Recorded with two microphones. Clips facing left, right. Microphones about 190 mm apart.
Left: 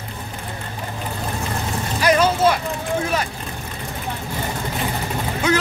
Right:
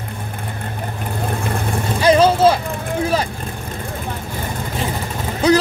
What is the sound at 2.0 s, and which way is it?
Vehicle, 30° right (ahead or behind).